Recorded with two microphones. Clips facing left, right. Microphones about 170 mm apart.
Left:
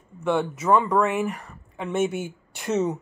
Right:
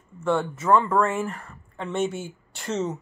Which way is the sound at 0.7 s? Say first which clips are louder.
Even; 15° left (ahead or behind).